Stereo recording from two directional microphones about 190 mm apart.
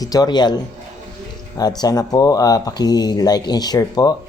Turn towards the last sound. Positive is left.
turn(degrees=20)  # may be behind; listen again after turning